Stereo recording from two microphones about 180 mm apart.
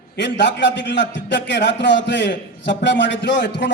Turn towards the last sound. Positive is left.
turn(degrees=75)  # may be behind; listen again after turning